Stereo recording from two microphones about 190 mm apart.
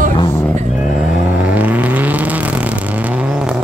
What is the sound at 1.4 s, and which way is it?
Vehicle, 10° right (ahead or behind).